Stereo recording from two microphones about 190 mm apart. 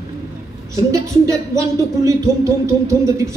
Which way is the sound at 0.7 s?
15° right (ahead or behind).